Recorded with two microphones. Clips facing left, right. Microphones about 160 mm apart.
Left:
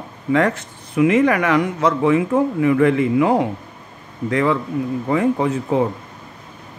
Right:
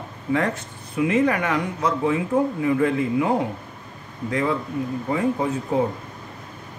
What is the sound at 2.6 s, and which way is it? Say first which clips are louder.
Speech: left 5 dB; 75° left (ahead or behind).